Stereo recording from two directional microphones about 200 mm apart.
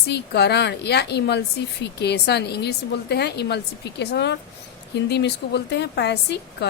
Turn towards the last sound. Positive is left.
turn(degrees=55)  # may be behind; listen again after turning